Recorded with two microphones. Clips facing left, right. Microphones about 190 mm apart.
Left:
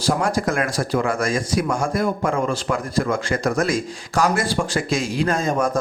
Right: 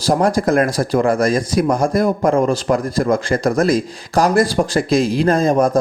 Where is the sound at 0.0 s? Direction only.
35° right (ahead or behind).